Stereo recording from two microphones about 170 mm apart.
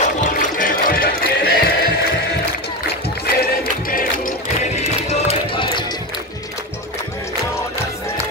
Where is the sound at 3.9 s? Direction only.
55° left (ahead or behind).